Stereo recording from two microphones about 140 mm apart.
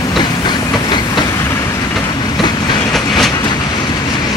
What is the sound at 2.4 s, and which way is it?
Train, 30° left (ahead or behind).